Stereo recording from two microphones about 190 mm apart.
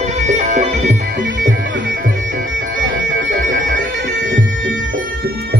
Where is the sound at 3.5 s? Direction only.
45° right (ahead or behind).